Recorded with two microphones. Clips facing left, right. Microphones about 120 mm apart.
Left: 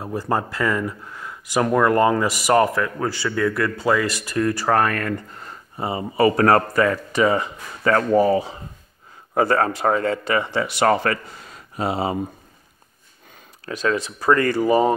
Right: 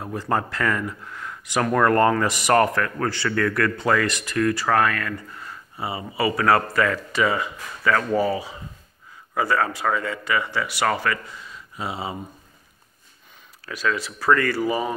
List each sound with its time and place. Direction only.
0.2 s speech: 15° left (ahead or behind)
4.1 s a man's voice: 30° left (ahead or behind)
11.5 s a sound: 60° left (ahead or behind)
13.7 s speech: 25° left (ahead or behind)